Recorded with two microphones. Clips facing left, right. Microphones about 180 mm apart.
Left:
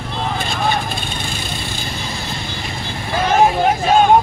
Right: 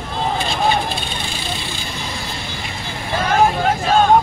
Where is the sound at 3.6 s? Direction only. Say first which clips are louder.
Left 2 dB; 15° left (ahead or behind).